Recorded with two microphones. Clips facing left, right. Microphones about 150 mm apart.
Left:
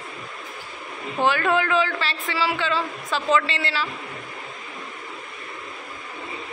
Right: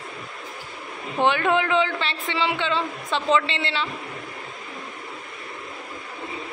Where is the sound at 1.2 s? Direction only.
20° right (ahead or behind).